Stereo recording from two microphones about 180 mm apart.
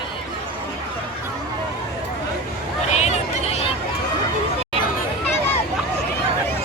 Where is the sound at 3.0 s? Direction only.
40° left (ahead or behind).